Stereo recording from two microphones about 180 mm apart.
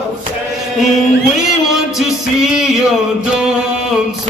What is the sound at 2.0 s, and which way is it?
Music, 5° right (ahead or behind).